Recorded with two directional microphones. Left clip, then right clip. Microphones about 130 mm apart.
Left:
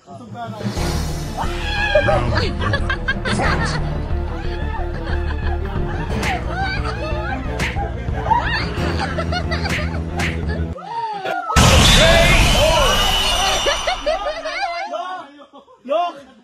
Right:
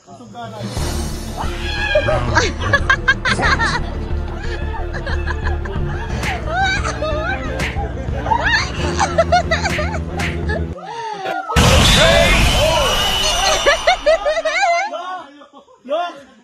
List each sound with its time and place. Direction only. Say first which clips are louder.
1.4 s cat: left 1 dB; centre (ahead or behind)
6.2 s music: right 5 dB; centre (ahead or behind)
8.4 s a sound: right 4 dB; 5° right (ahead or behind)